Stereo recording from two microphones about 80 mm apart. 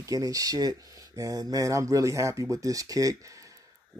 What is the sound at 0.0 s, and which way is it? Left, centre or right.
Speech, right.